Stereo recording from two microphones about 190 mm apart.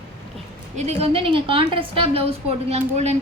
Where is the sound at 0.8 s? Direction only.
35° right (ahead or behind).